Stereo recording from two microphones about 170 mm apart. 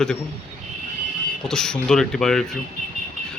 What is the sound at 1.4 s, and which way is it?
A man's voice, 5° left (ahead or behind).